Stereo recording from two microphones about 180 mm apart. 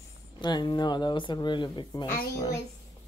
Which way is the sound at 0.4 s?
25° left (ahead or behind).